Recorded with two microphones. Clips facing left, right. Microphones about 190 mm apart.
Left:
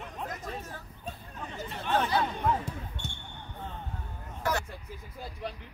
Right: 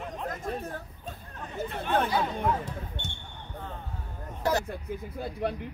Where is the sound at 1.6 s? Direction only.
55° right (ahead or behind).